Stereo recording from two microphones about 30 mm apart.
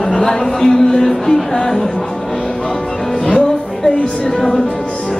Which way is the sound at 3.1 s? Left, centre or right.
Left.